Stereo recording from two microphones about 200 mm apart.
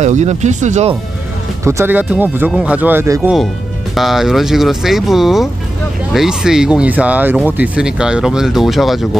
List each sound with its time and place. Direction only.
0.0 s speech: 35° right (ahead or behind)
1.6 s speech: 15° right (ahead or behind)